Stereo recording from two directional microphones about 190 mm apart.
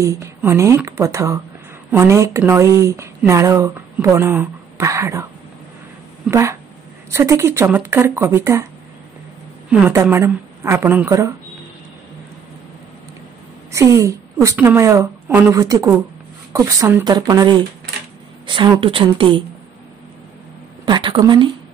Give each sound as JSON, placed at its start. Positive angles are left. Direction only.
{"t": 0.0, "sound": "a woman's voice", "side_deg": -15}
{"t": 6.3, "sound": "a woman's voice", "side_deg": -15}
{"t": 9.7, "sound": "a woman's voice", "side_deg": -10}
{"t": 13.7, "sound": "a woman's voice", "side_deg": -15}
{"t": 20.8, "sound": "speech", "side_deg": -25}